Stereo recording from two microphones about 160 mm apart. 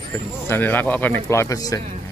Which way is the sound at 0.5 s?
10° left (ahead or behind).